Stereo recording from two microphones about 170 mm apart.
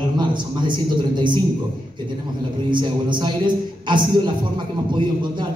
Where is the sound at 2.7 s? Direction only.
25° right (ahead or behind).